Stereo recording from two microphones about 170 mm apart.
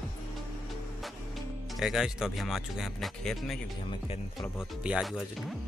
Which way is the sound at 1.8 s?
5° right (ahead or behind).